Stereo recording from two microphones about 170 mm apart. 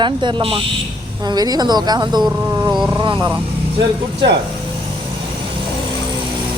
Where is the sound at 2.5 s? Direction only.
20° right (ahead or behind).